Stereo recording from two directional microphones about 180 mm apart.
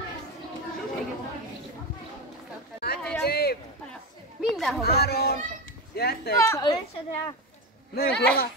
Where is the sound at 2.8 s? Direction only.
60° left (ahead or behind).